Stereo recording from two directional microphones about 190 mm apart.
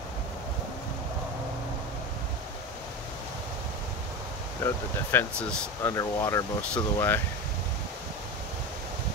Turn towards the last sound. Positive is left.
turn(degrees=10)  # may be behind; listen again after turning